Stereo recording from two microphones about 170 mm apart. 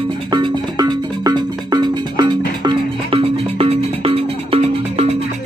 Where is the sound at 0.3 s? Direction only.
25° right (ahead or behind).